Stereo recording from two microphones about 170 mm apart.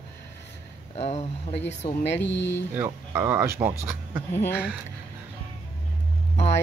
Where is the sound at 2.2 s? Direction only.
90° left.